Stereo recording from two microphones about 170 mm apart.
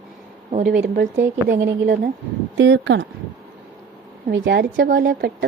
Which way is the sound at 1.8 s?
60° right (ahead or behind).